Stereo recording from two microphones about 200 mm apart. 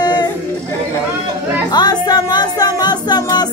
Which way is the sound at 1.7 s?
20° left (ahead or behind).